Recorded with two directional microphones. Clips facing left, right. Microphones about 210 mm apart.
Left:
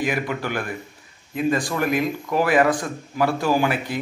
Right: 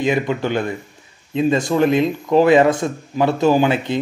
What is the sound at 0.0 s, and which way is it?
Speech, 25° right (ahead or behind).